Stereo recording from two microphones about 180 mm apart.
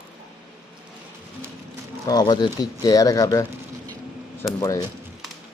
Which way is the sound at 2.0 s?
20° left (ahead or behind).